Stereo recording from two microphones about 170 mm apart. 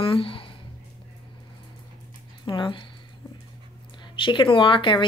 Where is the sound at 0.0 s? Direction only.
30° left (ahead or behind).